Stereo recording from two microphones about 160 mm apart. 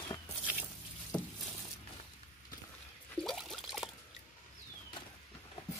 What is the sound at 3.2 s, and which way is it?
Liquid, centre (ahead or behind).